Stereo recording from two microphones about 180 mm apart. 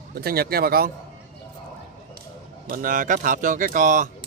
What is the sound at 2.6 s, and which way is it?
Speech, 50° right (ahead or behind).